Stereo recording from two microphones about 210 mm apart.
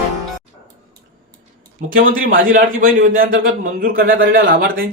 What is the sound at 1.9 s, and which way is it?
Speech, 40° right (ahead or behind).